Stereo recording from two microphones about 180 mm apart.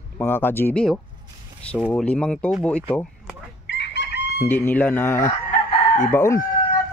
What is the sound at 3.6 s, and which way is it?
Chicken, 75° left (ahead or behind).